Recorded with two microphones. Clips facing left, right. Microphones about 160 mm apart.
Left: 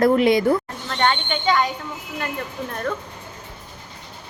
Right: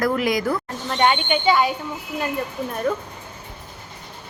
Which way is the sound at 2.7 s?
10° right (ahead or behind).